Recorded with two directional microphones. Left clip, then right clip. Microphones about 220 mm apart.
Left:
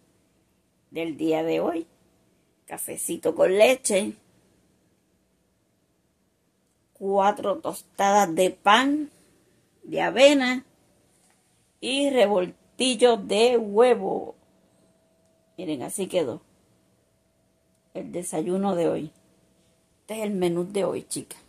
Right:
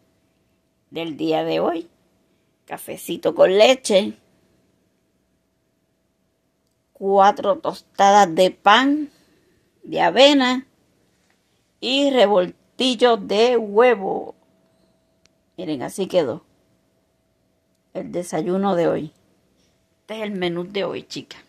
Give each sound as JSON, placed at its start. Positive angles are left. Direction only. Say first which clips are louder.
{"t": 0.9, "sound": "speech", "louder": "right 3 dB", "side_deg": -35}
{"t": 7.1, "sound": "speech", "louder": "right 7 dB", "side_deg": -35}
{"t": 11.8, "sound": "speech", "louder": "right 5 dB", "side_deg": -35}
{"t": 15.5, "sound": "speech", "louder": "right 5 dB", "side_deg": -35}
{"t": 17.9, "sound": "speech", "louder": "right 5 dB", "side_deg": -35}
{"t": 20.1, "sound": "speech", "louder": "right 1 dB", "side_deg": -5}